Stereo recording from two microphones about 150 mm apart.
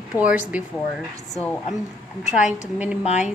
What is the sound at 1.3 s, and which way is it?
Speech, 5° left (ahead or behind).